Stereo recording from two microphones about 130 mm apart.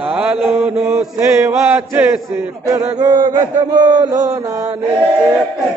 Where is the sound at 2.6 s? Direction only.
30° right (ahead or behind).